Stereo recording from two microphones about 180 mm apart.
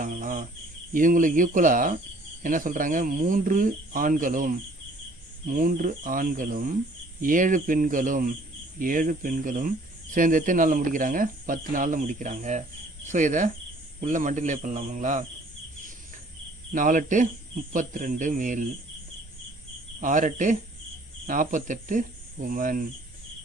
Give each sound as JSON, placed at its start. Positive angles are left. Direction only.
{"t": 0.0, "sound": "cricket", "side_deg": -50}
{"t": 0.9, "sound": "speech", "side_deg": -50}
{"t": 16.7, "sound": "speech", "side_deg": -50}
{"t": 20.0, "sound": "speech", "side_deg": -45}